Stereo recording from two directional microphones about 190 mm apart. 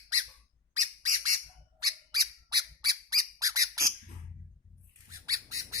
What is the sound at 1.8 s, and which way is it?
Squeak, 20° right (ahead or behind).